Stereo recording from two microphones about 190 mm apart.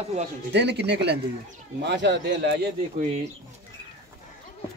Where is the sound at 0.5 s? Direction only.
60° right (ahead or behind).